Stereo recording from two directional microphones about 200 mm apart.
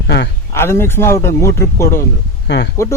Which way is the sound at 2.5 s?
65° left (ahead or behind).